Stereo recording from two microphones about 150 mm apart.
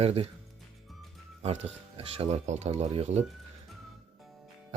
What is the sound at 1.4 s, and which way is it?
Speech, 45° right (ahead or behind).